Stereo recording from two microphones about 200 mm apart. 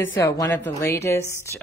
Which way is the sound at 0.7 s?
15° left (ahead or behind).